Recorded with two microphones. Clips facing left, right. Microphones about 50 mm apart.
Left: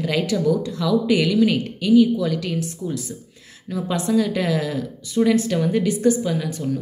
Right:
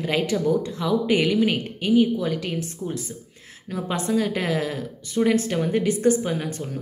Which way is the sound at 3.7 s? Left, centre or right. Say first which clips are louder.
Left 3 dB; right.